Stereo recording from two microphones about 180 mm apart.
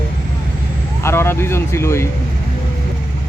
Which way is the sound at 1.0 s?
15° left (ahead or behind).